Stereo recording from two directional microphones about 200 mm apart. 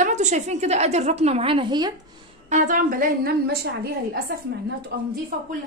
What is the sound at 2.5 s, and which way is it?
A woman's voice, 40° right (ahead or behind).